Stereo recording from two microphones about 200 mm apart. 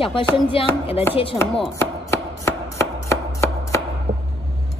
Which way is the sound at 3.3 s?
15° left (ahead or behind).